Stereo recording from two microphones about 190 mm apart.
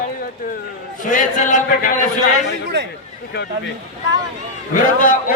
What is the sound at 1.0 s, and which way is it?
Speech, 40° left (ahead or behind).